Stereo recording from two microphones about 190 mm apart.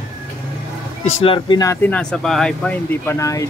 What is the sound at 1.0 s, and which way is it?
Speech, 30° left (ahead or behind).